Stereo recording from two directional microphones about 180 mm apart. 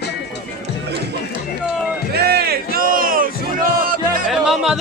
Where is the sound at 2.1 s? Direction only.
60° right (ahead or behind).